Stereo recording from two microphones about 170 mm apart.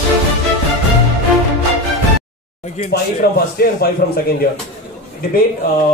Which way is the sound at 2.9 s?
65° left (ahead or behind).